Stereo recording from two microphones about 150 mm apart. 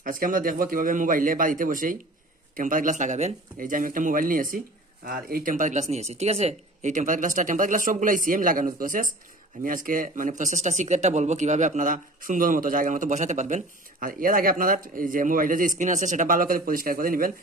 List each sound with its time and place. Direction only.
0.0 s speech: 65° right (ahead or behind)